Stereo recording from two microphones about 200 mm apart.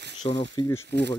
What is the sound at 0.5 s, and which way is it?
Speech, 15° left (ahead or behind).